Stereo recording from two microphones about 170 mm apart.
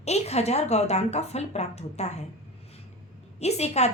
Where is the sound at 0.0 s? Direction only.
40° left (ahead or behind).